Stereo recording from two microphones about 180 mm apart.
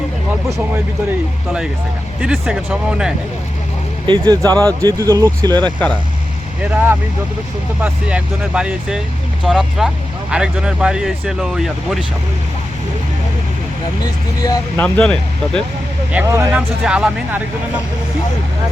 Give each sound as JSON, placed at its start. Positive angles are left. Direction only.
{"t": 2.2, "sound": "speech", "side_deg": -5}
{"t": 4.0, "sound": "speech", "side_deg": -25}
{"t": 7.8, "sound": "speech", "side_deg": -5}
{"t": 14.4, "sound": "speech", "side_deg": 20}
{"t": 14.8, "sound": "speech", "side_deg": 5}
{"t": 16.1, "sound": "speech", "side_deg": -15}